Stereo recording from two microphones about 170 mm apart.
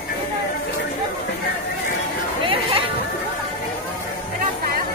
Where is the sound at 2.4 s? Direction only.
30° right (ahead or behind).